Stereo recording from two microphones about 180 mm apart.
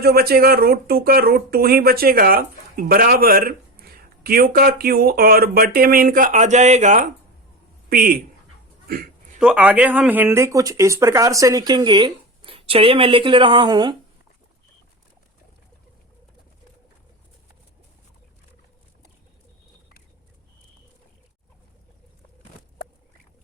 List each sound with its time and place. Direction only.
0.0 s speech: 60° right (ahead or behind)
8.9 s a sound: 55° right (ahead or behind)
9.4 s speech: 5° right (ahead or behind); by 13.9 s 25° right (ahead or behind)